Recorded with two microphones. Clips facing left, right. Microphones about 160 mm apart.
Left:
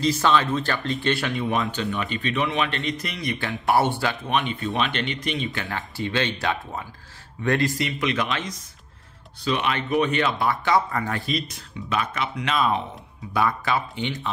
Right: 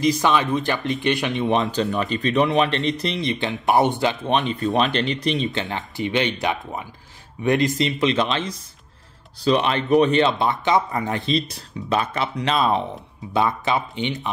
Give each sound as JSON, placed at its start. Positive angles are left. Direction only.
{"t": 0.0, "sound": "speech", "side_deg": -15}
{"t": 1.7, "sound": "speech", "side_deg": -35}
{"t": 13.3, "sound": "speech", "side_deg": -20}